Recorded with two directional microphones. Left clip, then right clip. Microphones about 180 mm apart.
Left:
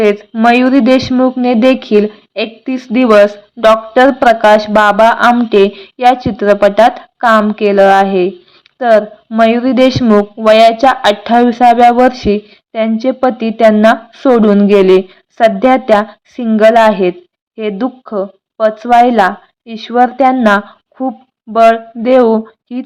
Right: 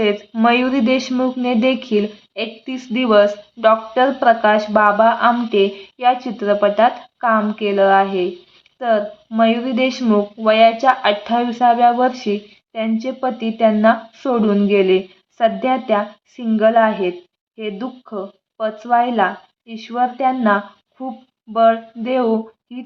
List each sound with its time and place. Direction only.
0.0 s a woman's voice: 30° left (ahead or behind)